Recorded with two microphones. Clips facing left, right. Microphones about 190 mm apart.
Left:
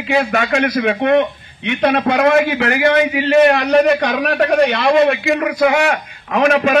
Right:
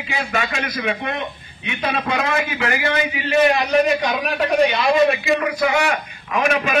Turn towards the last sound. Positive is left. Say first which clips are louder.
# left 6 dB
turn(degrees=60)  # may be behind; listen again after turning